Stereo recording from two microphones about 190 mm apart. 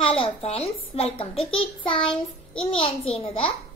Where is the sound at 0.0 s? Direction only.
30° left (ahead or behind).